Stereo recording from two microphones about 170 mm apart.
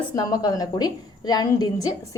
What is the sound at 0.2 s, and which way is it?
A woman's voice, 20° left (ahead or behind).